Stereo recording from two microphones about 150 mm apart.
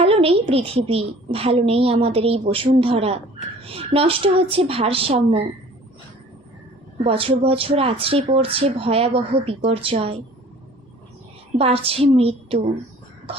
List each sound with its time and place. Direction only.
0.0 s a woman's voice: 40° right (ahead or behind)
7.0 s a woman's voice: 35° right (ahead or behind)
11.5 s a woman's voice: 40° right (ahead or behind)